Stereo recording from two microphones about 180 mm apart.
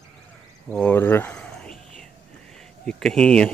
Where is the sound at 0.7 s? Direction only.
10° left (ahead or behind).